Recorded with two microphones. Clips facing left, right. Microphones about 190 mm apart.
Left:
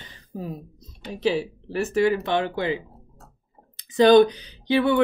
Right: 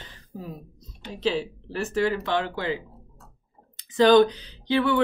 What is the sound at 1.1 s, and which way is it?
Speech, 15° left (ahead or behind).